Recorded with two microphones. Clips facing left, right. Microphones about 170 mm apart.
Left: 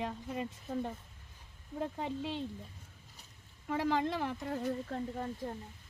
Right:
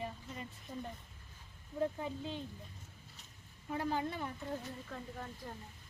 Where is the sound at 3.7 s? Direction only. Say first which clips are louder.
Left 5 dB; 90° left.